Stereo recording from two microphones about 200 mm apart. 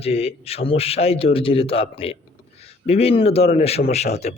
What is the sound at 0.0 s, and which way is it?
A man's voice, 30° left (ahead or behind).